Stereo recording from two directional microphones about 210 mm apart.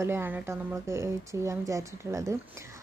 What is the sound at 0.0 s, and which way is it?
A woman's voice, 10° right (ahead or behind).